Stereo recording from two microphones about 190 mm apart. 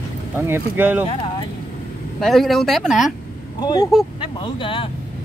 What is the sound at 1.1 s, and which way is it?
Vehicle, 25° left (ahead or behind).